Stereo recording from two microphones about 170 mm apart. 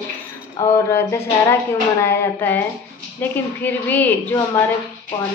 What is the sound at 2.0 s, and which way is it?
Speech, 10° left (ahead or behind).